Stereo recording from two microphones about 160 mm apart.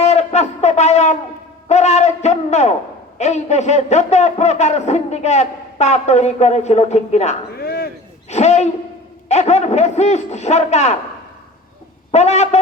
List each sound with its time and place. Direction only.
0.0 s a sound: 45° left (ahead or behind)
1.6 s hoot: 45° left (ahead or behind)
3.2 s a man's voice: 45° left (ahead or behind)
7.6 s chop: 75° left (ahead or behind)
8.3 s a man's voice: 45° left (ahead or behind)
12.1 s a man's voice: 45° left (ahead or behind)